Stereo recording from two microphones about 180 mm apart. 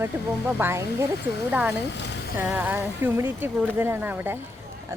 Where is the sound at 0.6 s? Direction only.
15° right (ahead or behind).